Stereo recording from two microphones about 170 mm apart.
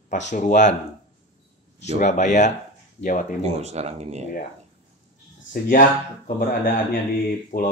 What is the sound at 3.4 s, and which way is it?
Speech, 40° right (ahead or behind).